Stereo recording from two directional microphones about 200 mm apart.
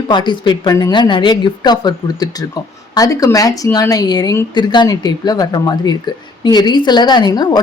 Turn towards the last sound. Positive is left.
turn(degrees=20)  # may be behind; listen again after turning